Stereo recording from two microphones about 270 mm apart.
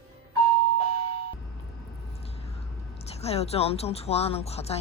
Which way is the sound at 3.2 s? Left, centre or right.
Left.